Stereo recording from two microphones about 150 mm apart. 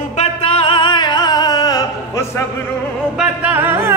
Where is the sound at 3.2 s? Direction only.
10° right (ahead or behind).